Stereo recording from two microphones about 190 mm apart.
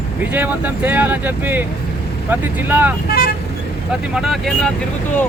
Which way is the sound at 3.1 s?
55° left (ahead or behind).